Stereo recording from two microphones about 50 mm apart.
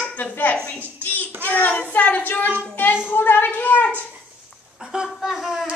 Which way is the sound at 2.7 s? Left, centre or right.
Left.